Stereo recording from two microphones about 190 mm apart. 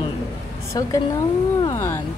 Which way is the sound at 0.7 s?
20° left (ahead or behind).